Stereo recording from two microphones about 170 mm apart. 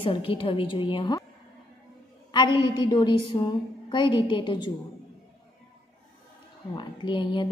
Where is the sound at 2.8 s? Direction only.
25° left (ahead or behind).